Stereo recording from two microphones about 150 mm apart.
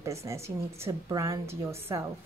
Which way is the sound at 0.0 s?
20° right (ahead or behind).